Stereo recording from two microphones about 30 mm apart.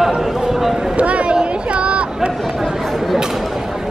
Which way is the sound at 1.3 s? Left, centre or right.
Right.